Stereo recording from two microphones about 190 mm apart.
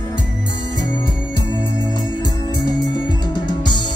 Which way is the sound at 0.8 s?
25° left (ahead or behind).